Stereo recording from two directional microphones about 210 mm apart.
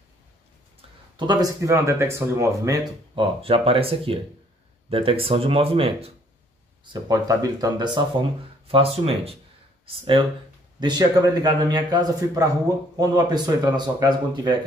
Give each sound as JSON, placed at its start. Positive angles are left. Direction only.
{"t": 1.1, "sound": "speech", "side_deg": -20}